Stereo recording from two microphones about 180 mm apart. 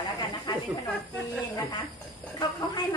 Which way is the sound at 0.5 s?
25° left (ahead or behind).